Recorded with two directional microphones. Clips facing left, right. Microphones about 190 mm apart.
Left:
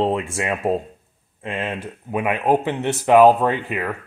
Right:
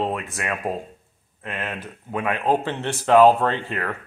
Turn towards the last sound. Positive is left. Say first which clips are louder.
# left 3 dB
turn(degrees=10)  # may be behind; listen again after turning